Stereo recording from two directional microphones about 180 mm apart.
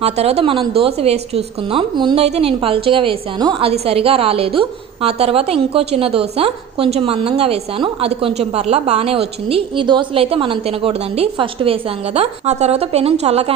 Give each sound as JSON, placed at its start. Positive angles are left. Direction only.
{"t": 0.0, "sound": "a woman's voice", "side_deg": -35}